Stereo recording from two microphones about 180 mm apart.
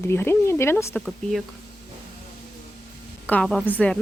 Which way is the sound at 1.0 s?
Centre (ahead or behind).